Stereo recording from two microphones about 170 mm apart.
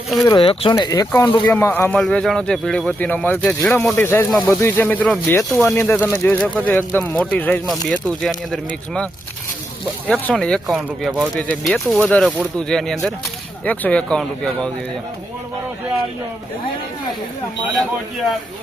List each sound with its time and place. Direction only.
0.3 s speech: 30° left (ahead or behind)
1.5 s a man's voice: 10° left (ahead or behind)
5.7 s a man's voice: 10° left (ahead or behind)
10.1 s speech: 5° left (ahead or behind)
11.3 s a man's voice: 5° left (ahead or behind)